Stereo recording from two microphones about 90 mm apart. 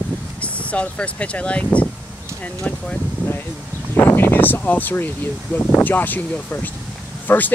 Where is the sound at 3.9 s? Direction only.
25° left (ahead or behind).